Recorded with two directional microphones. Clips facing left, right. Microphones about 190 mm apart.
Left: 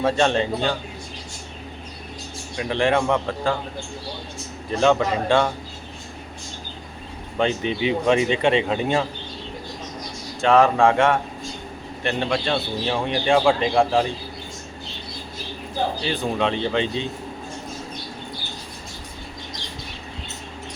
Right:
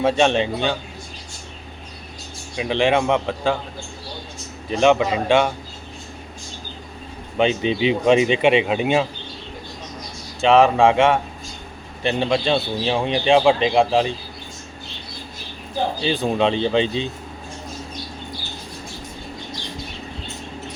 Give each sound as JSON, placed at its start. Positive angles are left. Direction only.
{"t": 0.0, "sound": "speech", "side_deg": -20}
{"t": 2.8, "sound": "speech", "side_deg": -20}
{"t": 4.7, "sound": "a man's voice", "side_deg": -15}
{"t": 7.3, "sound": "speech", "side_deg": -20}
{"t": 10.4, "sound": "speech", "side_deg": -20}
{"t": 16.2, "sound": "speech", "side_deg": -25}